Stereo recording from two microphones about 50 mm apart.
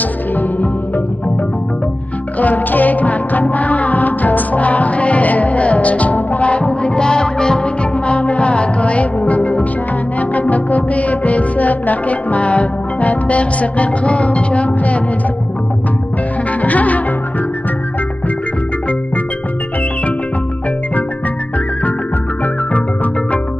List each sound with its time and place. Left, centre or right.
0.4 s music: left
2.4 s music: left
16.6 s music: left